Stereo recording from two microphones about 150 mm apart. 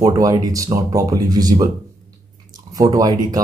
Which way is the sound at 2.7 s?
25° right (ahead or behind).